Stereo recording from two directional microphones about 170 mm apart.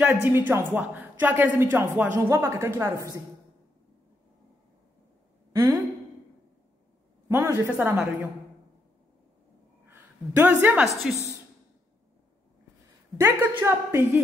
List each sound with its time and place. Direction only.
0.2 s speech: 10° right (ahead or behind)
5.5 s a woman's voice: 20° right (ahead or behind)
7.2 s speech: 15° right (ahead or behind)
9.8 s a woman's voice: 10° right (ahead or behind)
13.2 s speech: 15° right (ahead or behind)